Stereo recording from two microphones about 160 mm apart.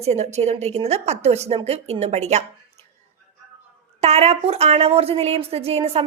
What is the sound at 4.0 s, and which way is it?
A woman's voice, 40° right (ahead or behind).